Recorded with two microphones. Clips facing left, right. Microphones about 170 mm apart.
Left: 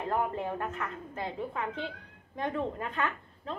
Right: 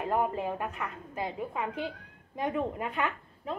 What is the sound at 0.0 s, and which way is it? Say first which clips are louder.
A woman's voice: right 2 dB; 15° right (ahead or behind).